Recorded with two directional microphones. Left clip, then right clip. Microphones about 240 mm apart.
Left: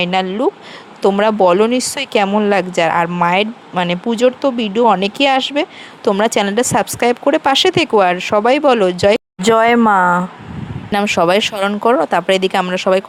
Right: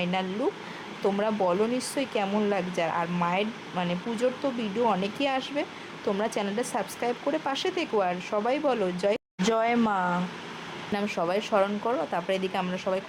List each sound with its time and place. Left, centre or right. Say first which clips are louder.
0.0 s speech: left 13 dB; left